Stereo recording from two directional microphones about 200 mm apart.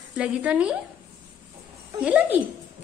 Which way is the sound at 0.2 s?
5° right (ahead or behind).